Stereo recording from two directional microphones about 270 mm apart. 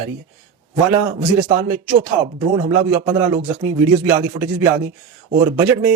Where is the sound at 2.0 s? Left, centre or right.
Centre.